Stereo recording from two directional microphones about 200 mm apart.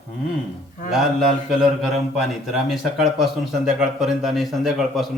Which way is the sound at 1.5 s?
Centre (ahead or behind).